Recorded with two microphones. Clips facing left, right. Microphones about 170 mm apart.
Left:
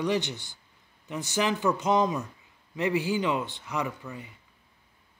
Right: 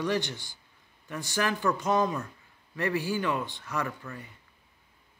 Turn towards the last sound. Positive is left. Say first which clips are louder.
# left 1 dB
turn(degrees=15)  # may be behind; listen again after turning